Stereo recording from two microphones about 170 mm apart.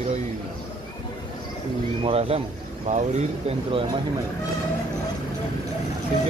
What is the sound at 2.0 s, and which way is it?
Speech, 35° right (ahead or behind).